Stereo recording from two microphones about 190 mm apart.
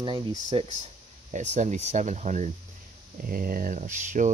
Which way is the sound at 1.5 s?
40° right (ahead or behind).